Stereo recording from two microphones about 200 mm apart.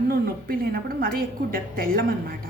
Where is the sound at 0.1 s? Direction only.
50° right (ahead or behind).